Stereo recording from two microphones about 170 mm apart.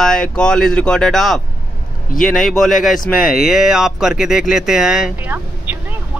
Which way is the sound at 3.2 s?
55° left (ahead or behind).